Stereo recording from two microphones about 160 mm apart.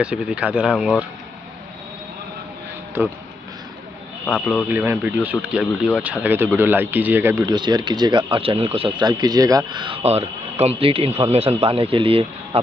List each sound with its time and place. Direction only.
0.0 s speech: 5° right (ahead or behind)
4.6 s speech: 10° right (ahead or behind)
7.5 s speech: 30° right (ahead or behind)
10.0 s speech: 40° right (ahead or behind)